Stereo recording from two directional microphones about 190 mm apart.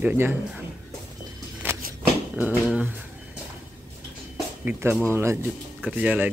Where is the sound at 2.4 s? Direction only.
5° right (ahead or behind).